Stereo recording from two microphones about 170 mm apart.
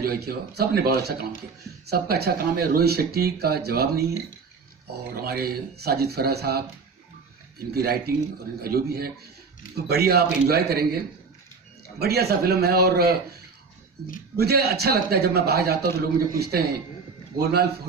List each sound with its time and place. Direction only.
0.0 s speech: 65° right (ahead or behind)
5.1 s speech: 65° right (ahead or behind)
12.0 s speech: 70° right (ahead or behind)
14.3 s speech: 70° right (ahead or behind)